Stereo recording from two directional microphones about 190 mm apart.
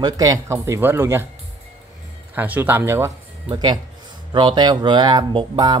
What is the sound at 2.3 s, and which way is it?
Speech, 10° right (ahead or behind).